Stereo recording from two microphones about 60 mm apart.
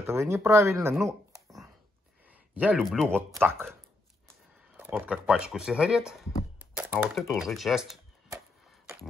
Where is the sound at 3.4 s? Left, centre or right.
Right.